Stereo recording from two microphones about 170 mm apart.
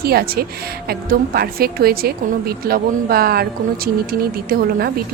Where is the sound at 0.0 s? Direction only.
65° right (ahead or behind).